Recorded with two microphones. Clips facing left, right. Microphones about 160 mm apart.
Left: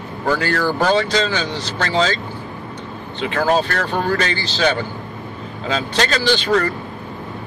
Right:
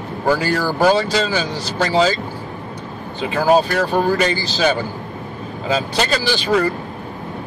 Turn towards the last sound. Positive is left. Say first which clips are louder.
# even
turn(degrees=-10)  # may be behind; listen again after turning